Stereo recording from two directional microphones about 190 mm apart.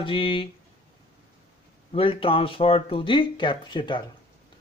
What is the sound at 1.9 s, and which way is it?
Speech, 30° left (ahead or behind).